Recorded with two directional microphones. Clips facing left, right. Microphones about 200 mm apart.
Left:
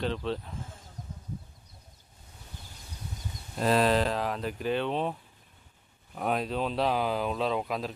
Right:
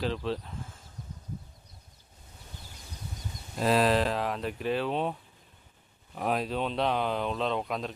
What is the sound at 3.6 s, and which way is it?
Speech, centre (ahead or behind).